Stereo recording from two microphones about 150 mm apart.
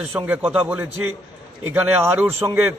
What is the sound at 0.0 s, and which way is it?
A man's voice, 10° right (ahead or behind).